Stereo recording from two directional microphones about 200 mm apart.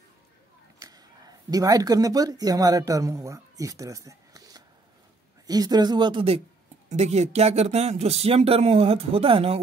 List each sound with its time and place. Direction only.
0.7 s speech: 20° right (ahead or behind)